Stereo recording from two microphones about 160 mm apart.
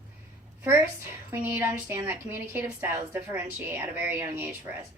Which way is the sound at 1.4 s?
15° right (ahead or behind).